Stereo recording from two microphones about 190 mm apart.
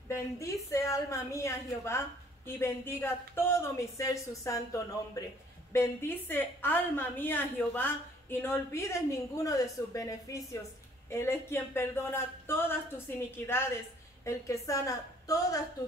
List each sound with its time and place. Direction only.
0.1 s a woman's voice: 15° left (ahead or behind)